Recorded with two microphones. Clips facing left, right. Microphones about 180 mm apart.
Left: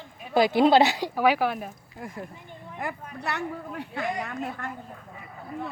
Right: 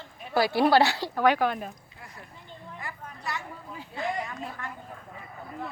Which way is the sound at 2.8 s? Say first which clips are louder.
Left 10 dB; 60° left (ahead or behind).